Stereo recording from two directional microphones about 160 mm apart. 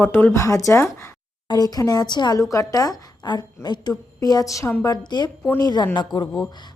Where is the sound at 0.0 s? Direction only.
10° left (ahead or behind).